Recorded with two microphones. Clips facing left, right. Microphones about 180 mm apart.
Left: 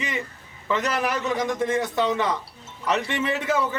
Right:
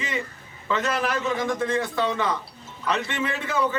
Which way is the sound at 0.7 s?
15° left (ahead or behind).